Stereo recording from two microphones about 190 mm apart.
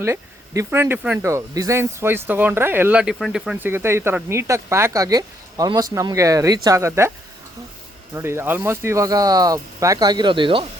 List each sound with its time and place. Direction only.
0.0 s speech: 15° right (ahead or behind)
8.1 s speech: 15° right (ahead or behind)